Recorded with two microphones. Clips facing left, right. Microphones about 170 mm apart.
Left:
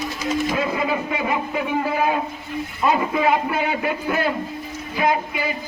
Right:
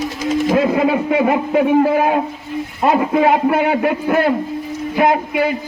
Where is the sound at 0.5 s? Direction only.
65° right (ahead or behind).